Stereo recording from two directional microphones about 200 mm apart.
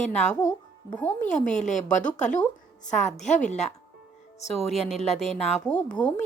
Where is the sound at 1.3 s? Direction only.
35° left (ahead or behind).